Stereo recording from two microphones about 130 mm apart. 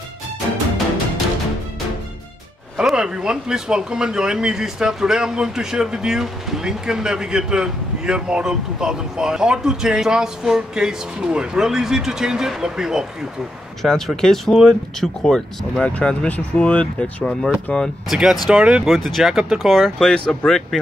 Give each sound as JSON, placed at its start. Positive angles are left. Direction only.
{"t": 2.8, "sound": "speech", "side_deg": -5}